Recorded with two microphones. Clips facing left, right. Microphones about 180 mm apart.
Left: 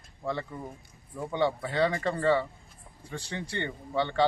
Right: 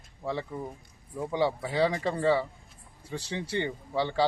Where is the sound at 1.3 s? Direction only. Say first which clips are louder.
Even; 5° right (ahead or behind).